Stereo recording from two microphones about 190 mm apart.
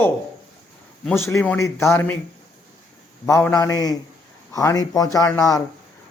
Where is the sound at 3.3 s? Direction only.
15° left (ahead or behind).